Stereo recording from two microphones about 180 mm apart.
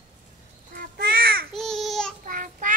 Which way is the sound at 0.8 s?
55° right (ahead or behind).